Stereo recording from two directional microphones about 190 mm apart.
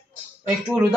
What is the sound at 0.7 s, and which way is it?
Speech, 10° right (ahead or behind).